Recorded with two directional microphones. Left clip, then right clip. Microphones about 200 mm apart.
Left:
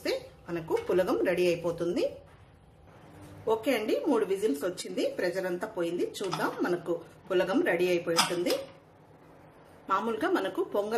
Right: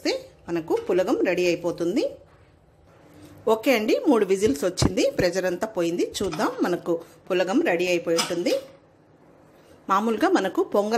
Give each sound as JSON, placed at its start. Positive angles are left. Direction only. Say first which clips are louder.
{"t": 0.0, "sound": "speech", "louder": "right 5 dB", "side_deg": -35}
{"t": 3.4, "sound": "speech", "louder": "right 7 dB", "side_deg": -45}
{"t": 9.8, "sound": "speech", "louder": "right 7 dB", "side_deg": -40}